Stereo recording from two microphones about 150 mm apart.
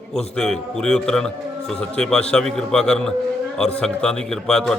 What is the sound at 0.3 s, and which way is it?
Speech, 5° left (ahead or behind).